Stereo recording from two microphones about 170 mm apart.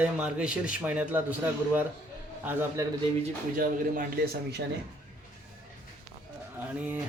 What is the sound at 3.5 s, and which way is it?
A man's voice, 60° right (ahead or behind).